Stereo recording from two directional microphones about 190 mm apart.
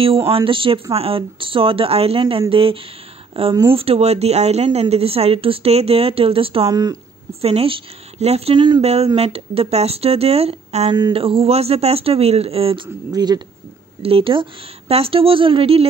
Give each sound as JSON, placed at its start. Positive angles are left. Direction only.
{"t": 0.3, "sound": "speech", "side_deg": -25}
{"t": 7.4, "sound": "speech", "side_deg": -30}